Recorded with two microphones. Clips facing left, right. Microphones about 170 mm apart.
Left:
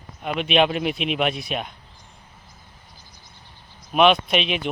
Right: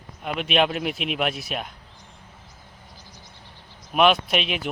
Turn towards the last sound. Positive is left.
turn(degrees=-5)  # may be behind; listen again after turning